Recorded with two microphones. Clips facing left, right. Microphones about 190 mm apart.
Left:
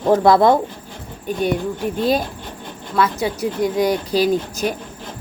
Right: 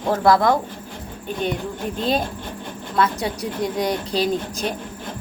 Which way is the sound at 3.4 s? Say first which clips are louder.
Left 6 dB; 5° left (ahead or behind).